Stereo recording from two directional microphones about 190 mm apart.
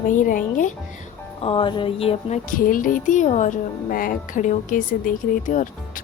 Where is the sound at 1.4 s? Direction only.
25° left (ahead or behind).